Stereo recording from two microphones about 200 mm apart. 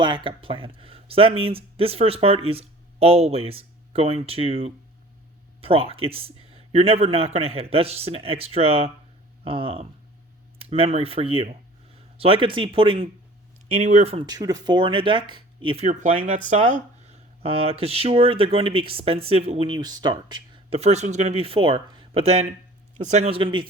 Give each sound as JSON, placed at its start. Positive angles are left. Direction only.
{"t": 0.3, "sound": "speech", "side_deg": -25}
{"t": 13.7, "sound": "speech", "side_deg": -35}